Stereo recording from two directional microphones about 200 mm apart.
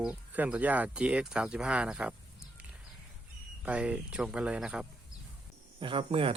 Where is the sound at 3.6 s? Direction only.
5° right (ahead or behind).